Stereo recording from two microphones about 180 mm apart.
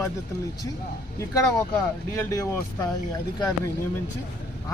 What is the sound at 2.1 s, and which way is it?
Speech, 20° left (ahead or behind).